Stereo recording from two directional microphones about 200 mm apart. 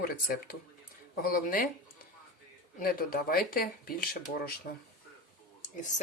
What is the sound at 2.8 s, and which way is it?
Speech, 45° left (ahead or behind).